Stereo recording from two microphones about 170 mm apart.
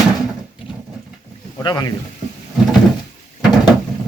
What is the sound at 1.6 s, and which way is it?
Speech, 25° left (ahead or behind).